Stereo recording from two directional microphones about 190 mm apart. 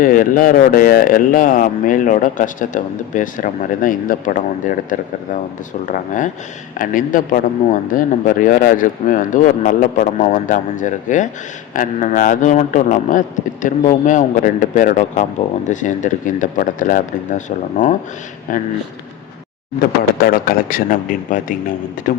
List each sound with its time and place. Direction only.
0.0 s a man's voice: 45° left (ahead or behind)
19.8 s speech: 50° left (ahead or behind)